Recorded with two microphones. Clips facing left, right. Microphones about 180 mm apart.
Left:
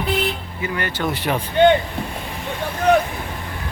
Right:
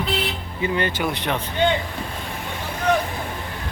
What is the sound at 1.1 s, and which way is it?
Speech, 5° left (ahead or behind).